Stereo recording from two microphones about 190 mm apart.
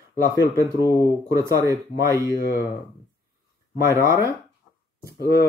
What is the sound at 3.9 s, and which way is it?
Speech, 15° right (ahead or behind).